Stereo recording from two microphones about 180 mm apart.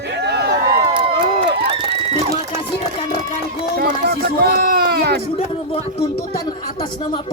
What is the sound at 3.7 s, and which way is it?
Run, 60° right (ahead or behind).